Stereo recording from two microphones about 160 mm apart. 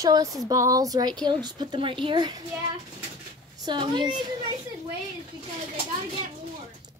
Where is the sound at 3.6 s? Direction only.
30° right (ahead or behind).